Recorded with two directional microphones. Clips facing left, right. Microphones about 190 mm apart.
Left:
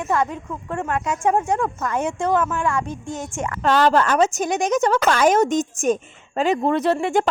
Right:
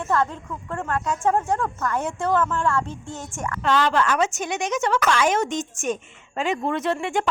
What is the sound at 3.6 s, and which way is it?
A woman's voice, 40° left (ahead or behind).